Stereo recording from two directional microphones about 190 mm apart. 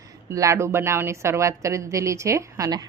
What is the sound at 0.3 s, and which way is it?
A woman's voice, 15° right (ahead or behind).